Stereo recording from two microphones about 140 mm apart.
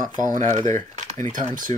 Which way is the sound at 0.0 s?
70° right (ahead or behind).